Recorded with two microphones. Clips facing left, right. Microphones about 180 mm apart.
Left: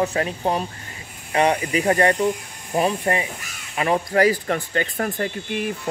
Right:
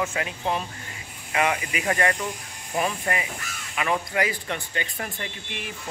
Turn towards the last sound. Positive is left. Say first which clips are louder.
# left 10 dB
turn(degrees=45)  # may be behind; listen again after turning